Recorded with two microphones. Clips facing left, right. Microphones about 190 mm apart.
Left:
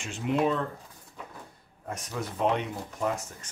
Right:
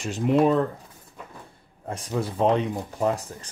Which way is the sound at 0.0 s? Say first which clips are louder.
Right 6 dB; 40° right (ahead or behind).